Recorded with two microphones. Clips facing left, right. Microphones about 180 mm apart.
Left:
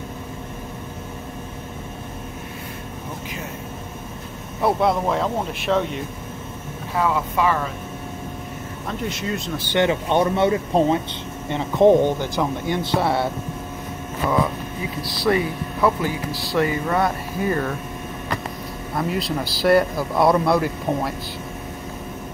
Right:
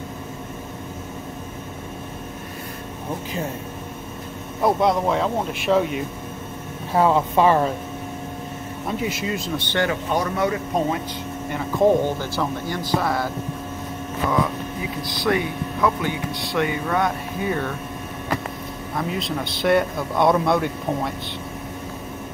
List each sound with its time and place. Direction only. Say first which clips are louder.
4.6 s speech: even; centre (ahead or behind)
7.0 s speech: right 4 dB; 30° right (ahead or behind)
8.8 s speech: right 2 dB; 5° right (ahead or behind)
9.7 s speech: left 4 dB; 20° left (ahead or behind)
15.0 s speech: left 2 dB; centre (ahead or behind)
18.9 s speech: left 2 dB; centre (ahead or behind)